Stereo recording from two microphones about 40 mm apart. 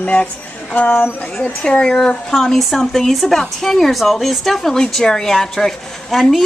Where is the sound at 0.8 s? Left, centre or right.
Left.